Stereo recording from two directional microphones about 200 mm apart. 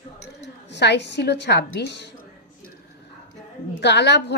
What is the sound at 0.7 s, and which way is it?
Speech, 60° left (ahead or behind).